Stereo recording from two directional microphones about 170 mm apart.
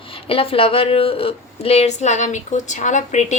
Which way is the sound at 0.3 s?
35° left (ahead or behind).